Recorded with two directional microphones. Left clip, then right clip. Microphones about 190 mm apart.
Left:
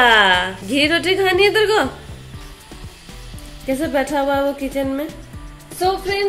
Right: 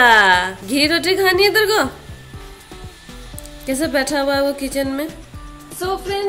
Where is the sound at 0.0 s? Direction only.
5° right (ahead or behind).